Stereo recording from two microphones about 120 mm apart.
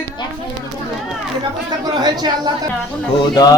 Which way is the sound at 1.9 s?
35° right (ahead or behind).